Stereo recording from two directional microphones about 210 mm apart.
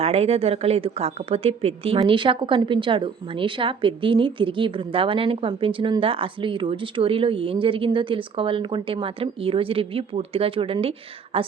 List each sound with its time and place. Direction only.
0.0 s speech: 30° right (ahead or behind)